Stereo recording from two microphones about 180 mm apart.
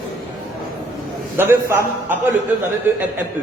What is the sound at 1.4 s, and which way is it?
Speech, 15° right (ahead or behind).